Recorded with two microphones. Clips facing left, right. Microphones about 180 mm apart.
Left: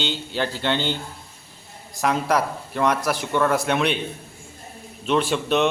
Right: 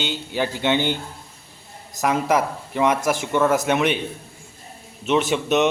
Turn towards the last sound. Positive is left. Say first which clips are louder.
# right 1 dB
turn(degrees=-5)  # may be behind; listen again after turning